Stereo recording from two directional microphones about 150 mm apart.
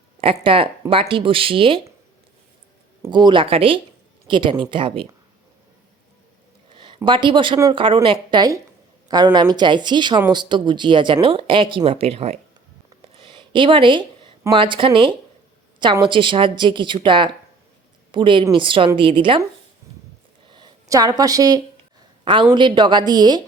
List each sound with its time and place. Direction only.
0.4 s speech: 35° right (ahead or behind)
3.1 s speech: 30° right (ahead or behind)
6.7 s speech: 35° right (ahead or behind)
13.1 s a sound: 35° right (ahead or behind)
14.5 s speech: 35° right (ahead or behind)
20.5 s speech: 25° right (ahead or behind)